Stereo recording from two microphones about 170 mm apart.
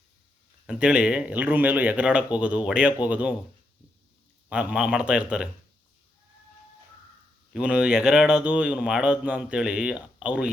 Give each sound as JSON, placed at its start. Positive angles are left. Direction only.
{"t": 0.7, "sound": "speech", "side_deg": -5}
{"t": 4.4, "sound": "speech", "side_deg": -5}
{"t": 7.5, "sound": "speech", "side_deg": -5}